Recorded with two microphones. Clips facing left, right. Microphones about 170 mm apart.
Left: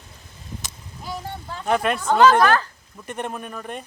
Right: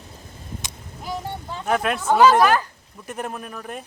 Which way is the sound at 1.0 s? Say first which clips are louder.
Right 2 dB; 20° right (ahead or behind).